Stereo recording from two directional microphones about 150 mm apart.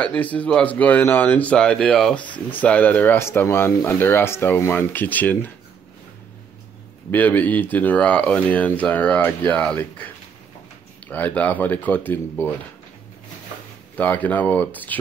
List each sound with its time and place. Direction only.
0.0 s speech: 10° left (ahead or behind)
7.1 s speech: 10° left (ahead or behind)
11.1 s speech: 10° left (ahead or behind)
13.9 s speech: 10° left (ahead or behind)